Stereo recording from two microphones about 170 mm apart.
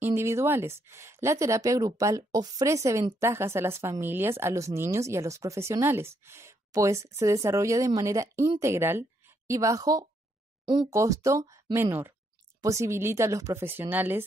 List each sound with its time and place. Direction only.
0.0 s a woman's voice: 15° right (ahead or behind)